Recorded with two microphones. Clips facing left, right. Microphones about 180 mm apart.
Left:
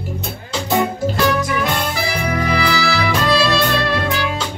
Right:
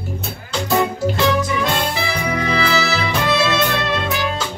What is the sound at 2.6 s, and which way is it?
Music, 20° right (ahead or behind).